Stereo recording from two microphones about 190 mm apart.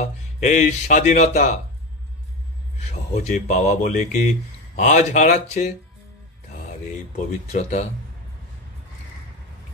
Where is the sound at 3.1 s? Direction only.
40° left (ahead or behind).